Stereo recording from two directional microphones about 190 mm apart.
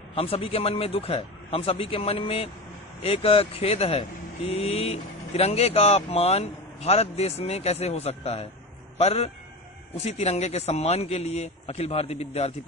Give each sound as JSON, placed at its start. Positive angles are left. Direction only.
{"t": 0.1, "sound": "a man's voice", "side_deg": 30}